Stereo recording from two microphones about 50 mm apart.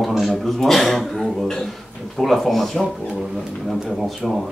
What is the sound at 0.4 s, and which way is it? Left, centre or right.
A man's voice, centre.